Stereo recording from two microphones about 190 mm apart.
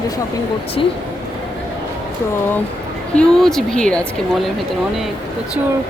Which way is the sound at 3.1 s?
Centre (ahead or behind).